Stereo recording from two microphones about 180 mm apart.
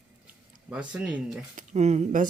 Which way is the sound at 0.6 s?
5° right (ahead or behind).